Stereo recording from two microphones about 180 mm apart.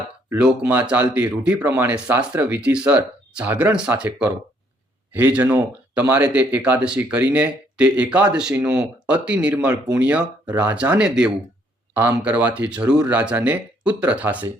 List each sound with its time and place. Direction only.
0.3 s speech: 5° right (ahead or behind)